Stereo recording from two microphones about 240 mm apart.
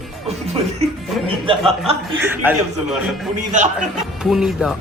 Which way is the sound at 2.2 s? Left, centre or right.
Centre.